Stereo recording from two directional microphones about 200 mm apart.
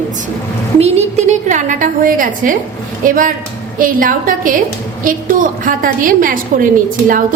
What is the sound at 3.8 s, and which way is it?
A woman's voice, 45° right (ahead or behind).